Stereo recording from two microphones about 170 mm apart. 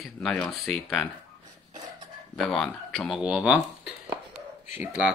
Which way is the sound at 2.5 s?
Centre (ahead or behind).